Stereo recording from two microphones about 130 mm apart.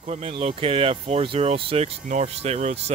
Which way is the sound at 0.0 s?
55° right (ahead or behind).